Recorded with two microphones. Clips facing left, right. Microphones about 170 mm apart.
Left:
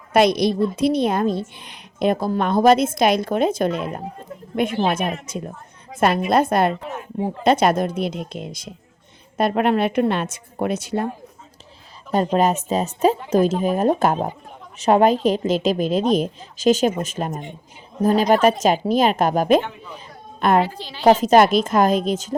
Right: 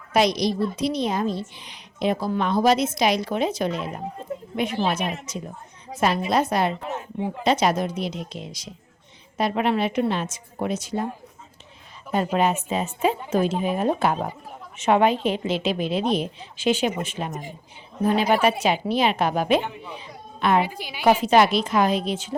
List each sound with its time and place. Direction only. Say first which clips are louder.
0.1 s a woman's voice: left 4 dB; 55° left (ahead or behind)
12.1 s a woman's voice: left 4 dB; 35° left (ahead or behind)
20.0 s music: left 3 dB; 45° left (ahead or behind)
20.6 s a woman's voice: left 3 dB; 15° right (ahead or behind)
21.0 s a woman's voice: left 4 dB; 40° left (ahead or behind)